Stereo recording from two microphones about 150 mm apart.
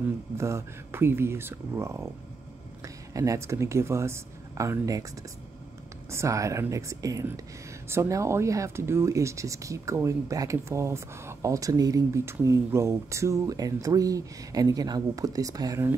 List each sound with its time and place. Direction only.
0.4 s speech: 20° right (ahead or behind)
6.0 s speech: 20° right (ahead or behind)